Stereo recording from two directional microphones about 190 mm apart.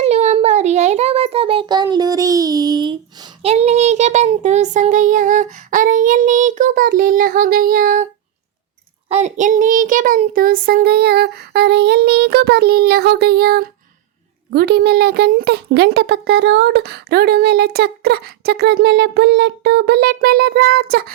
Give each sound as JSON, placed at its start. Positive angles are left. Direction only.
{"t": 0.0, "sound": "child singing", "side_deg": -35}
{"t": 9.0, "sound": "child singing", "side_deg": -35}
{"t": 14.5, "sound": "a woman's voice", "side_deg": -60}